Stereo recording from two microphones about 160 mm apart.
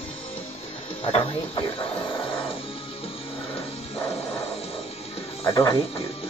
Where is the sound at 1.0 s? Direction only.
35° left (ahead or behind).